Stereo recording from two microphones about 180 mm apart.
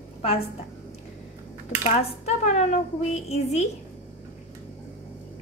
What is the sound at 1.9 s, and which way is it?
A woman's voice, 40° left (ahead or behind).